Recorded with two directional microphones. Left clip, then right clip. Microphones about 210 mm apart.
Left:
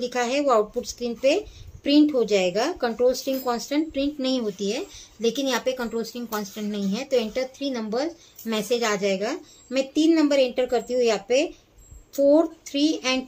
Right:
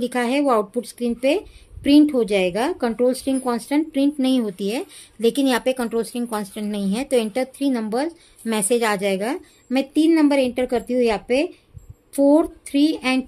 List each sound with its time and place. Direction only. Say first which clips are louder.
0.0 s speech: right 3 dB; 50° right (ahead or behind)